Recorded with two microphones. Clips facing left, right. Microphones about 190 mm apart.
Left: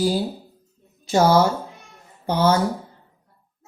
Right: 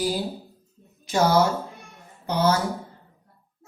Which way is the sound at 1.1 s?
25° left (ahead or behind).